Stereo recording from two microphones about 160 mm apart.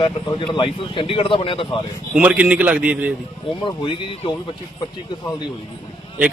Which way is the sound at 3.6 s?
35° left (ahead or behind).